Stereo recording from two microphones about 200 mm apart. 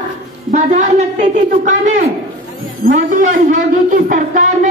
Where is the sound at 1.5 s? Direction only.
40° right (ahead or behind).